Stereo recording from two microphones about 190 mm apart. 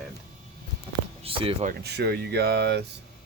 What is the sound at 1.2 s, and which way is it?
Speech, 30° right (ahead or behind).